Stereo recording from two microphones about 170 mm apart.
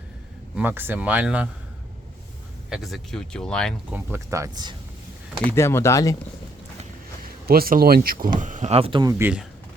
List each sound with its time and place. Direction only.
0.5 s speech: 10° right (ahead or behind)
2.6 s speech: centre (ahead or behind)
3.9 s speech: 15° right (ahead or behind)
5.4 s speech: 15° left (ahead or behind)
7.4 s speech: 60° right (ahead or behind)
8.4 s speech: 50° right (ahead or behind); by 9.1 s 25° right (ahead or behind)
9.1 s speech: 10° right (ahead or behind)